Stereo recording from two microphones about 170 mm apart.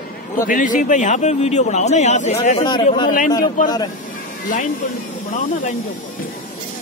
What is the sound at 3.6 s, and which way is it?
A man's voice, 55° left (ahead or behind).